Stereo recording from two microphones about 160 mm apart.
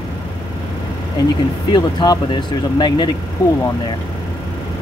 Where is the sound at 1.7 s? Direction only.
25° left (ahead or behind).